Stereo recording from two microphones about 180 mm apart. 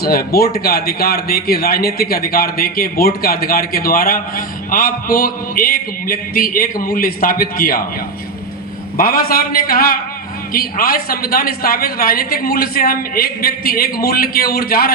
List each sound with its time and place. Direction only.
0.0 s a man's voice: 60° left (ahead or behind)
9.0 s a man's voice: 50° left (ahead or behind)